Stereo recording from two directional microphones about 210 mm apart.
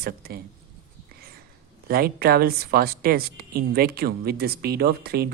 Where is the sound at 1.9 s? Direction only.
45° right (ahead or behind).